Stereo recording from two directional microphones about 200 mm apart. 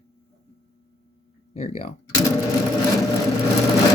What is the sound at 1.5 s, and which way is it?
Speech, 35° left (ahead or behind).